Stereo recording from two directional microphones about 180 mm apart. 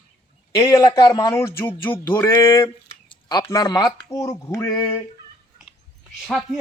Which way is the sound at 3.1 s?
25° left (ahead or behind).